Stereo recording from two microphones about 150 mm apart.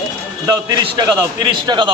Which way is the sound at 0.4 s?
30° right (ahead or behind).